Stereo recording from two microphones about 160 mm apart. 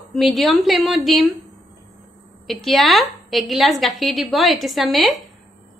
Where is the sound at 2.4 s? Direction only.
Centre (ahead or behind).